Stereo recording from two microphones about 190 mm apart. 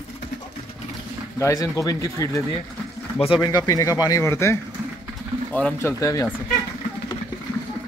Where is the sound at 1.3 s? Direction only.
15° left (ahead or behind).